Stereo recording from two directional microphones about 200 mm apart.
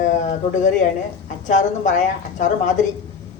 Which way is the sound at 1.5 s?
35° left (ahead or behind).